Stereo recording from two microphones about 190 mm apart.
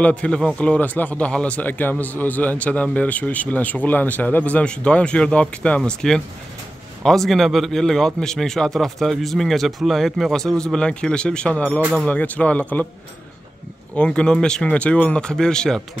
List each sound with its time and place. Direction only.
0.0 s a man's voice: 5° left (ahead or behind)
13.9 s a man's voice: 5° left (ahead or behind)